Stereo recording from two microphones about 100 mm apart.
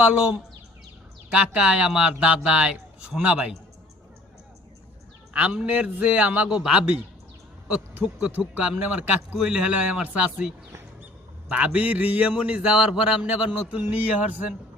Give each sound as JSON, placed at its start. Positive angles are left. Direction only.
{"t": 0.0, "sound": "speech", "side_deg": -10}
{"t": 5.3, "sound": "speech", "side_deg": -10}